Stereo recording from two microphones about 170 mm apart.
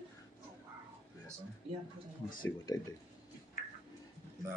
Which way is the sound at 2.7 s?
20° left (ahead or behind).